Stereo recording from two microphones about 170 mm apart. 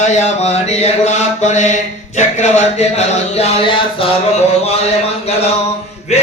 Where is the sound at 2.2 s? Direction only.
45° left (ahead or behind).